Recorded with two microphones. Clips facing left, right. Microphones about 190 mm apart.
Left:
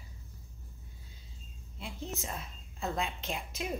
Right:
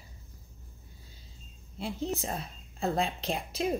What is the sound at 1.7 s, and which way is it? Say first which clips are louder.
A woman's voice: right 8 dB; 35° right (ahead or behind).